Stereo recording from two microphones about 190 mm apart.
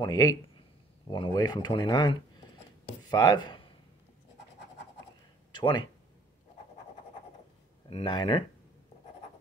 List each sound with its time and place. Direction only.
0.0 s speech: 20° left (ahead or behind)
5.5 s speech: 25° left (ahead or behind)
7.9 s speech: 25° left (ahead or behind)